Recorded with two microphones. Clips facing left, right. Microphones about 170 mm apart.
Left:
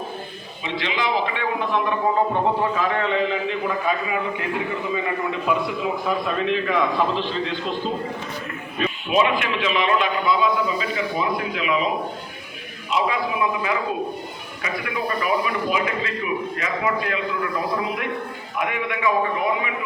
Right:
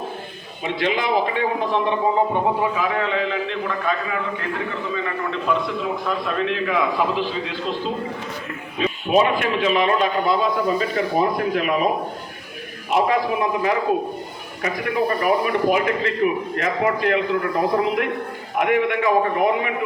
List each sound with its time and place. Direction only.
0.6 s a man's voice: 50° right (ahead or behind); by 7.8 s 5° right (ahead or behind)
9.0 s a man's voice: 40° right (ahead or behind)
12.9 s a man's voice: 45° right (ahead or behind)